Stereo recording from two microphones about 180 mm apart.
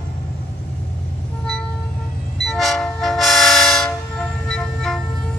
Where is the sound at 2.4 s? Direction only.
Centre (ahead or behind).